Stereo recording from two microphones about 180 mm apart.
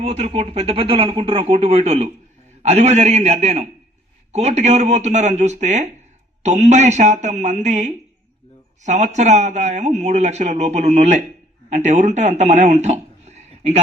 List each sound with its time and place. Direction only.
0.0 s speech: 35° right (ahead or behind)